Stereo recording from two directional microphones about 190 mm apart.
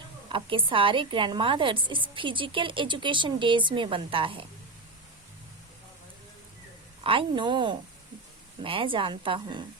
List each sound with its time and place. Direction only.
0.3 s a woman's voice: 25° right (ahead or behind)
7.0 s a woman's voice: 25° right (ahead or behind)